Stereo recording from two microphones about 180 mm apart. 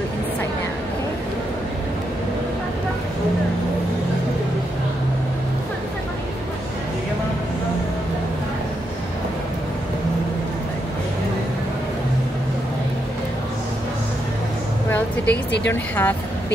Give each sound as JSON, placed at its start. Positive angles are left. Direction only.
{"t": 15.2, "sound": "speech", "side_deg": 70}
{"t": 15.7, "sound": "a woman's voice", "side_deg": 10}